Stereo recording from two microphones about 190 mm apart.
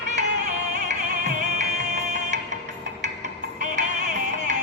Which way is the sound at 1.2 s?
40° right (ahead or behind).